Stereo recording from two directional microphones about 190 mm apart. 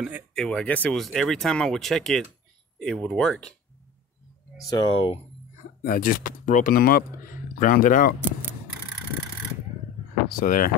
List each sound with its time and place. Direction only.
0.3 s speech: 5° left (ahead or behind)
4.6 s speech: 25° left (ahead or behind)
5.8 s speech: 50° left (ahead or behind)
10.2 s speech: 45° left (ahead or behind)